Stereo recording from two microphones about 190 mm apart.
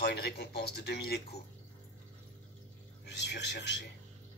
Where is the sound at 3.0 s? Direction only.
65° left (ahead or behind).